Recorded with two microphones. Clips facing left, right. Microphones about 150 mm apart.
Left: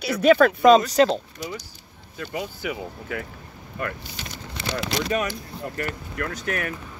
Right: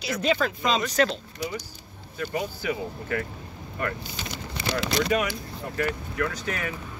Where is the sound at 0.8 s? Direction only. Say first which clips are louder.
Left 5 dB; 40° left (ahead or behind).